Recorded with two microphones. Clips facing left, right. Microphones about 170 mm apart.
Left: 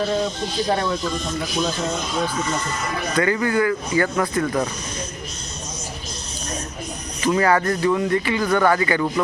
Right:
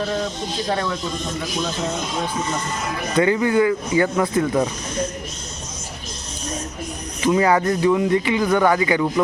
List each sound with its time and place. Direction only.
3.2 s speech: 20° right (ahead or behind)
7.2 s speech: 15° right (ahead or behind)